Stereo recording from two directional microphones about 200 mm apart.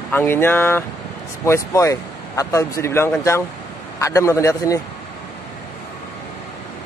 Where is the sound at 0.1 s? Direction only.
10° left (ahead or behind).